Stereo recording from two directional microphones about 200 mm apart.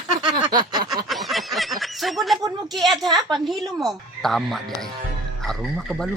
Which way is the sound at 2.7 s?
Centre (ahead or behind).